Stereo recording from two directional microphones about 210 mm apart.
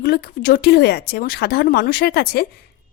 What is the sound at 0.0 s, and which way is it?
Speech, 45° left (ahead or behind).